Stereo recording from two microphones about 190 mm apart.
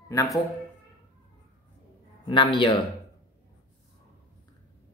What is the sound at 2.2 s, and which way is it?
Speech, 25° left (ahead or behind).